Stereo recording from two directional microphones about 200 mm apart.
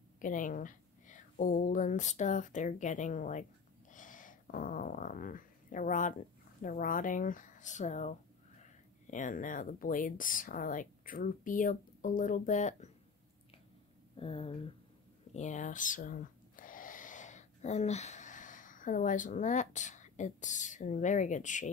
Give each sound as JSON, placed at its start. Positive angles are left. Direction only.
{"t": 0.2, "sound": "speech", "side_deg": 40}
{"t": 14.1, "sound": "speech", "side_deg": 25}